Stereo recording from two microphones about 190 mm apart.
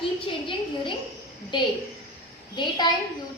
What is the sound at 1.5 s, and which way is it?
Speech, 25° left (ahead or behind).